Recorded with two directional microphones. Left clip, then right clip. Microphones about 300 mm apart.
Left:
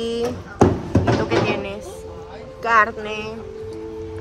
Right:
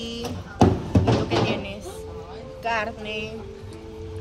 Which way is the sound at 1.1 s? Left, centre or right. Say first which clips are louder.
Left 4 dB; centre.